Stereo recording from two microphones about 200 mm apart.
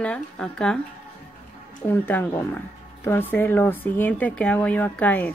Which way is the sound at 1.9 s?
10° left (ahead or behind).